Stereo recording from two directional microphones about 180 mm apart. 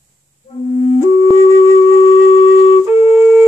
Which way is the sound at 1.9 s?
35° left (ahead or behind).